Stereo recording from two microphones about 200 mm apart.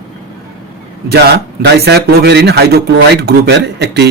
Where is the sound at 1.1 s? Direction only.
55° right (ahead or behind).